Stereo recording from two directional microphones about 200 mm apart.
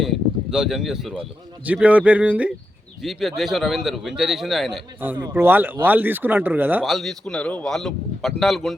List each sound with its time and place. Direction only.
0.0 s speech: centre (ahead or behind)